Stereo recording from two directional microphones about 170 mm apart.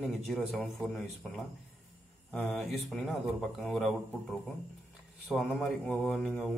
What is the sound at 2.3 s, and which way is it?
A man's voice, 5° left (ahead or behind).